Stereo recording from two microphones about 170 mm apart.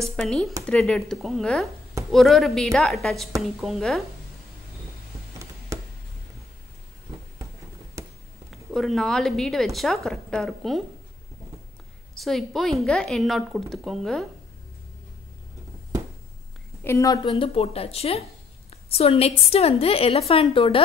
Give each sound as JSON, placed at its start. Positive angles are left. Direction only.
{"t": 0.0, "sound": "speech", "side_deg": 0}
{"t": 5.7, "sound": "a sound", "side_deg": -20}
{"t": 8.5, "sound": "speech", "side_deg": 0}
{"t": 12.2, "sound": "speech", "side_deg": 0}
{"t": 16.8, "sound": "a woman's voice", "side_deg": 20}
{"t": 17.3, "sound": "a woman's voice", "side_deg": 35}